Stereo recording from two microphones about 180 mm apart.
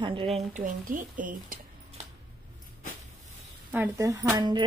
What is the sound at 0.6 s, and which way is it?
Speech, 50° right (ahead or behind).